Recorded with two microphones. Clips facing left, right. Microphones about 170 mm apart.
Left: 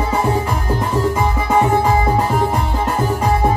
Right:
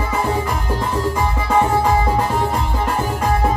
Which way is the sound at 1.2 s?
15° left (ahead or behind).